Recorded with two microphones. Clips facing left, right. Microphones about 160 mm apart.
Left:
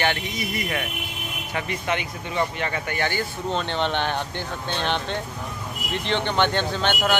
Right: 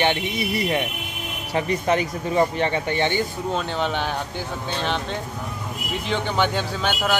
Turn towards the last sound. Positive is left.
turn(degrees=-5)  # may be behind; listen again after turning